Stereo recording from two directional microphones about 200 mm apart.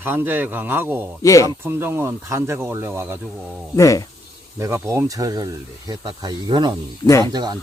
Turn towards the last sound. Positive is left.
turn(degrees=-20)  # may be behind; listen again after turning